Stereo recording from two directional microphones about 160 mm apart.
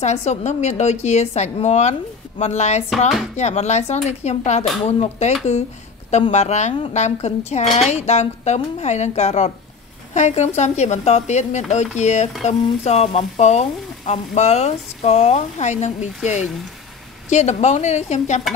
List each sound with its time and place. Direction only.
0.0 s speech: 45° left (ahead or behind)
6.3 s speech: 45° left (ahead or behind)
17.3 s speech: 45° left (ahead or behind)